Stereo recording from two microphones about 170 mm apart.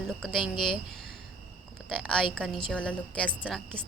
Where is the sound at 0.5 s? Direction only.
30° left (ahead or behind).